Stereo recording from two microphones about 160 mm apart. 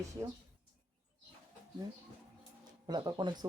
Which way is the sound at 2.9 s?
25° right (ahead or behind).